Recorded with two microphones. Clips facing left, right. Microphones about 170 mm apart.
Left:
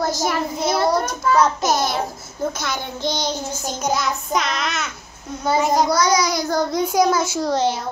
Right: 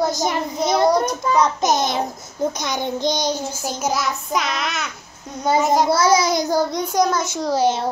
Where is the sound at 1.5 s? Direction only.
20° right (ahead or behind).